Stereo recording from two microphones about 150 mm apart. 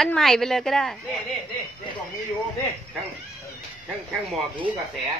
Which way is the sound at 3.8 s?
Centre (ahead or behind).